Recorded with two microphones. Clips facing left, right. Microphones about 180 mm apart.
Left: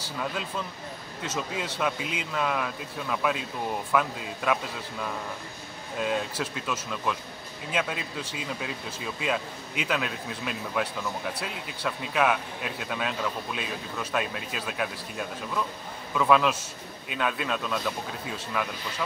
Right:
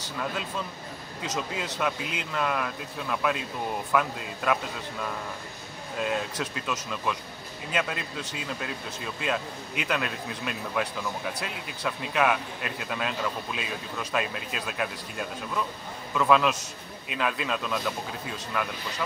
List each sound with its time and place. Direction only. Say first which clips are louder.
1.2 s speech: even; 5° left (ahead or behind)
5.9 s speech: left 1 dB; centre (ahead or behind)